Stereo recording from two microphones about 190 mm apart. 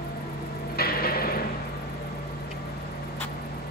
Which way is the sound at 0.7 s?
55° left (ahead or behind).